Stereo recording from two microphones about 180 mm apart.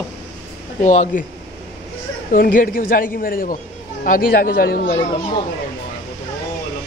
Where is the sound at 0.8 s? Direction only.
40° left (ahead or behind).